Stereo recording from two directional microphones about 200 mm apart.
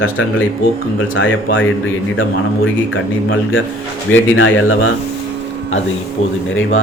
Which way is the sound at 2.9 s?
90° left.